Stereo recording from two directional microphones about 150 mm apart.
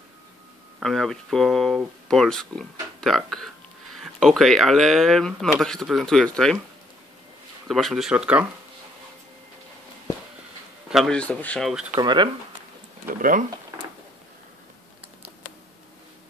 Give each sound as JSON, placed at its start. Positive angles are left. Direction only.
{"t": 0.7, "sound": "speech", "side_deg": 0}
{"t": 7.6, "sound": "speech", "side_deg": 0}
{"t": 10.9, "sound": "speech", "side_deg": 0}
{"t": 12.0, "sound": "speech", "side_deg": -30}
{"t": 13.0, "sound": "speech", "side_deg": -70}